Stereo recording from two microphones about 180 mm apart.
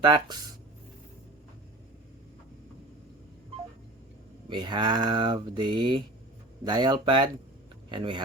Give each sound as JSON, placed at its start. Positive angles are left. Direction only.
{"t": 0.0, "sound": "speech", "side_deg": -25}
{"t": 4.4, "sound": "speech", "side_deg": -25}